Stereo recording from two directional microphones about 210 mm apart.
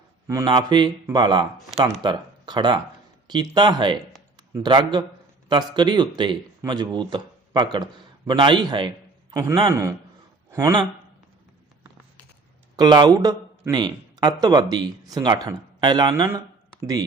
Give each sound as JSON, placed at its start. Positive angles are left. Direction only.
{"t": 0.3, "sound": "a man's voice", "side_deg": -20}
{"t": 12.7, "sound": "a man's voice", "side_deg": -20}